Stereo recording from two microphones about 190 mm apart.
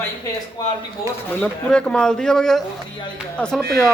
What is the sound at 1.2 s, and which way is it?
Speech, 5° left (ahead or behind).